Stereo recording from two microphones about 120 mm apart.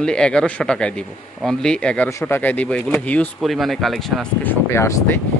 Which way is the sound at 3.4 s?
Centre (ahead or behind).